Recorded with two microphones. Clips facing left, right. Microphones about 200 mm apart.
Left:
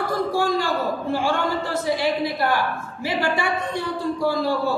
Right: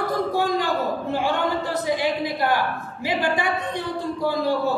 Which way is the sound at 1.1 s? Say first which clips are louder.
Even; 20° right (ahead or behind).